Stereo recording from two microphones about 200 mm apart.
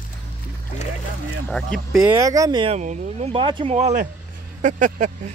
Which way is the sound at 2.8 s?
35° right (ahead or behind).